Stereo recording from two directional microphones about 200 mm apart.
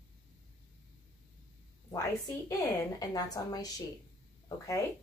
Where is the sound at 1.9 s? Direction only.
20° left (ahead or behind).